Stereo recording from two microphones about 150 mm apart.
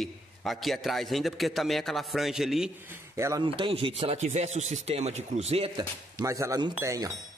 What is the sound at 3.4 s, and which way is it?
Speech, 35° right (ahead or behind).